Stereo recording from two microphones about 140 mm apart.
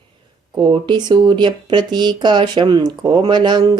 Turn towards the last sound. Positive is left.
turn(degrees=-30)  # may be behind; listen again after turning